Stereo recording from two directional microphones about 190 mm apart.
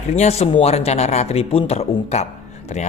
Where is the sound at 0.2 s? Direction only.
35° left (ahead or behind).